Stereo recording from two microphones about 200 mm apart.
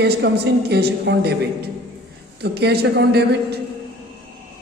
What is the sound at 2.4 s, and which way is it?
A woman's voice, 55° right (ahead or behind).